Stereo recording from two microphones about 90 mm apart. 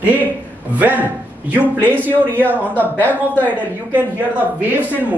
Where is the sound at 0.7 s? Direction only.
20° right (ahead or behind).